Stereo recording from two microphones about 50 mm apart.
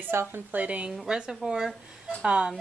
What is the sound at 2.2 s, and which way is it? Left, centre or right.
Speech, centre.